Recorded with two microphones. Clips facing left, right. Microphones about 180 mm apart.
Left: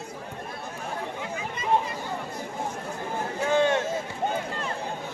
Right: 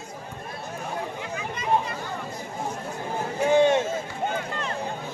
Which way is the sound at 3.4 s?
20° right (ahead or behind).